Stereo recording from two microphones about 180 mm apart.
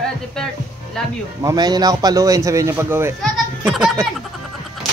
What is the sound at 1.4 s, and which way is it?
A man's voice, 25° right (ahead or behind).